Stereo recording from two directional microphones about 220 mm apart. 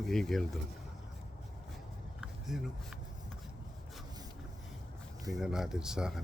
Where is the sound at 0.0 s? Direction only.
Centre (ahead or behind).